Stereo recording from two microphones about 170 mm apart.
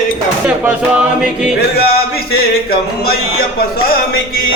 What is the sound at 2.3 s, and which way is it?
Music, 65° left (ahead or behind).